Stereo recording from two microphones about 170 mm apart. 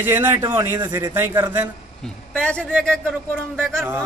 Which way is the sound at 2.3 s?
5° left (ahead or behind).